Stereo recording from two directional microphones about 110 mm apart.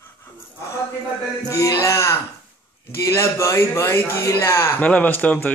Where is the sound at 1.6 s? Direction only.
30° left (ahead or behind).